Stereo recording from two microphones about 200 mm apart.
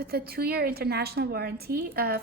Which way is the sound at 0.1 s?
50° right (ahead or behind).